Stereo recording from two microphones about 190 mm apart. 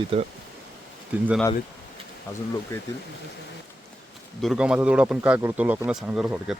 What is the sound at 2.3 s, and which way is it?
Speech, 15° left (ahead or behind).